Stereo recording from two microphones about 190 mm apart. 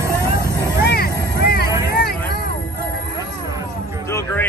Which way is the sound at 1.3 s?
55° left (ahead or behind).